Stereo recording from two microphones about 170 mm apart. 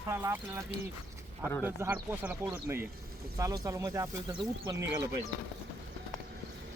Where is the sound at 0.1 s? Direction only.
15° right (ahead or behind).